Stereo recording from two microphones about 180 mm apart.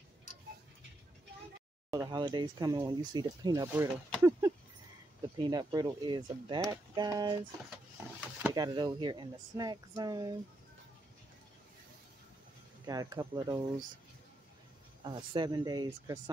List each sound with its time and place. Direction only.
1.9 s speech: 25° right (ahead or behind)
5.5 s speech: 20° right (ahead or behind)
8.2 s drawer open or close: 5° right (ahead or behind)
8.5 s speech: 20° right (ahead or behind)
12.8 s speech: 20° right (ahead or behind)
15.0 s speech: 25° right (ahead or behind)